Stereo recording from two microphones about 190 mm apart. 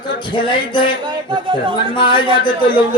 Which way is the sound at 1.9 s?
25° left (ahead or behind).